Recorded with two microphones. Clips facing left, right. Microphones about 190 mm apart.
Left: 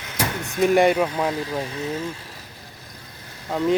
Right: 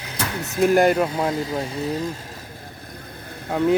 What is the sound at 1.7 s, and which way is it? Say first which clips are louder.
Speech: right 2 dB; 35° right (ahead or behind).